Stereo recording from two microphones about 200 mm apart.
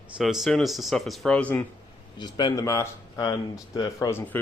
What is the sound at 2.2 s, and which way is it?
Speech, 20° left (ahead or behind).